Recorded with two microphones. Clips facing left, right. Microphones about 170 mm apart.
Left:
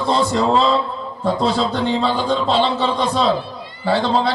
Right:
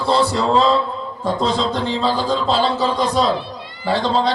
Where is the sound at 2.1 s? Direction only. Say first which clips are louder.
Even; 35° right (ahead or behind).